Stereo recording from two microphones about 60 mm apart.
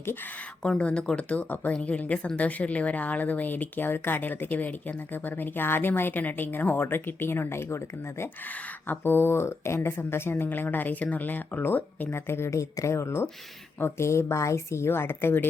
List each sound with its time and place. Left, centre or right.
0.8 s speech: centre; by 8.3 s left
8.4 s speech: left
12.5 s a woman's voice: left